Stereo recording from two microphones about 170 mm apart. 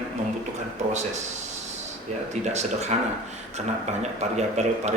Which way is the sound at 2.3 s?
40° right (ahead or behind).